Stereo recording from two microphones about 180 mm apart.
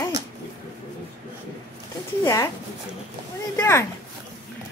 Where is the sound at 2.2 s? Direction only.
15° left (ahead or behind).